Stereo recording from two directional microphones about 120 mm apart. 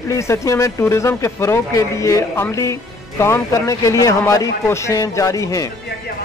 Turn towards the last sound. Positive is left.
turn(degrees=25)  # may be behind; listen again after turning